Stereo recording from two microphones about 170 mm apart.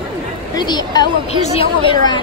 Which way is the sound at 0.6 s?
25° left (ahead or behind).